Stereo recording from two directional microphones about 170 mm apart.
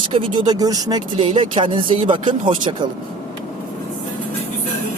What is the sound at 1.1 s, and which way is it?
Speech, 35° right (ahead or behind).